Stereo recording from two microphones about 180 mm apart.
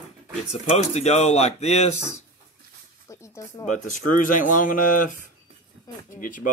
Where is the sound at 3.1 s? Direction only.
15° left (ahead or behind).